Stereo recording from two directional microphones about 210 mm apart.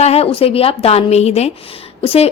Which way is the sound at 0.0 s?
30° left (ahead or behind).